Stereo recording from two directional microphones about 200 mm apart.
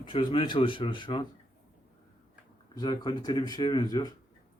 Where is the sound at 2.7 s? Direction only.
20° left (ahead or behind).